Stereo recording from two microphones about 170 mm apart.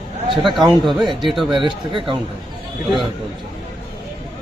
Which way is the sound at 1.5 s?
30° right (ahead or behind).